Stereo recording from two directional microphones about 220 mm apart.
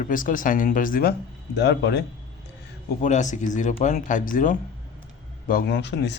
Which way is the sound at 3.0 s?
35° left (ahead or behind).